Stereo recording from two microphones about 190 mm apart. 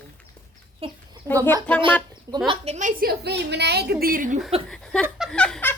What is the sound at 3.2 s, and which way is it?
A woman's voice, 60° right (ahead or behind).